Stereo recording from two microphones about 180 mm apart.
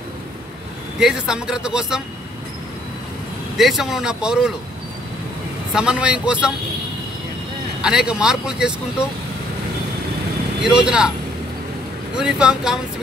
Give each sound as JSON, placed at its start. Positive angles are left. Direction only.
{"t": 0.9, "sound": "speech", "side_deg": -5}
{"t": 3.5, "sound": "speech", "side_deg": 0}
{"t": 5.7, "sound": "speech", "side_deg": -5}
{"t": 7.8, "sound": "speech", "side_deg": -5}
{"t": 10.6, "sound": "speech", "side_deg": -5}
{"t": 12.2, "sound": "speech", "side_deg": -5}